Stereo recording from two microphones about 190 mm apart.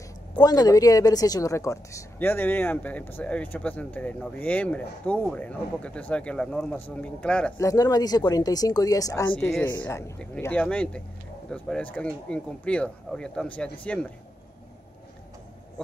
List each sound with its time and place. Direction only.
0.4 s speech: 20° left (ahead or behind)
7.6 s speech: 20° left (ahead or behind)